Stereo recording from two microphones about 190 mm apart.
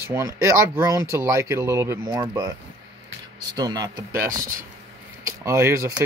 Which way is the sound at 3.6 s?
20° right (ahead or behind).